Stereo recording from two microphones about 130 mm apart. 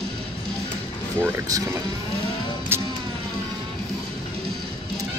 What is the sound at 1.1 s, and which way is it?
Speech, 20° right (ahead or behind).